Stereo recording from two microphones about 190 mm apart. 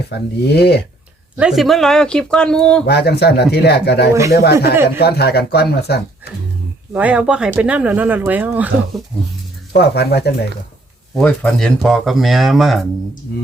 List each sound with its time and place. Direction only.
0.1 s speech: 60° left (ahead or behind)
1.4 s speech: centre (ahead or behind)
2.8 s speech: 60° left (ahead or behind)
6.9 s speech: 5° right (ahead or behind)
9.7 s speech: 60° left (ahead or behind)
11.1 s speech: 5° left (ahead or behind)